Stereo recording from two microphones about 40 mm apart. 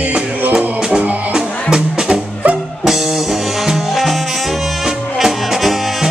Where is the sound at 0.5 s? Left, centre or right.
Right.